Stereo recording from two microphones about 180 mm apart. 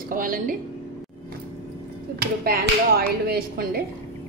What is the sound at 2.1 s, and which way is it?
Speech, 60° right (ahead or behind).